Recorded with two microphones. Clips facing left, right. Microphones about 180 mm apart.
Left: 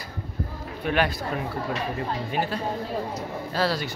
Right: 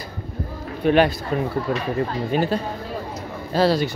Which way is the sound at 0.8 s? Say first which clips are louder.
Right 8 dB; 25° right (ahead or behind).